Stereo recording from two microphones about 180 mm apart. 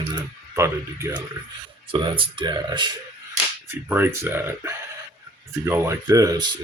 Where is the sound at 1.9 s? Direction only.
30° right (ahead or behind).